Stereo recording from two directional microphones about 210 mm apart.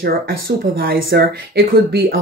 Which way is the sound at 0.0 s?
45° right (ahead or behind).